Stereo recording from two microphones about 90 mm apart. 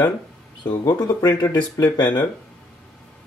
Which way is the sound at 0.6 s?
55° left (ahead or behind).